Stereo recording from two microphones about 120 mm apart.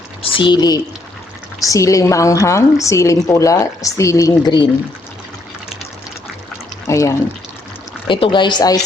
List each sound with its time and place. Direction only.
0.2 s a woman's voice: 45° left (ahead or behind); by 4.5 s 30° left (ahead or behind)
6.8 s speech: 25° left (ahead or behind)
8.0 s a woman's voice: 45° left (ahead or behind)